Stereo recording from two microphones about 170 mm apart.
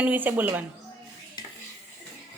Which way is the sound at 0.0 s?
10° right (ahead or behind).